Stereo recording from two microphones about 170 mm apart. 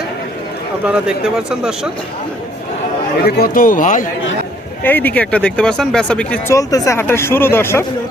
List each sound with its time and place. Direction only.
0.9 s speech: 5° right (ahead or behind)
3.2 s a man's voice: 65° left (ahead or behind)
4.8 s speech: 10° left (ahead or behind)
6.6 s speech: 20° left (ahead or behind)